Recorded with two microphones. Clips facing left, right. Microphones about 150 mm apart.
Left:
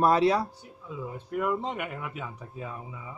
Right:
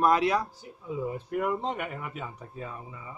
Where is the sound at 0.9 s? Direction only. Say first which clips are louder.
Right 3 dB; 5° right (ahead or behind).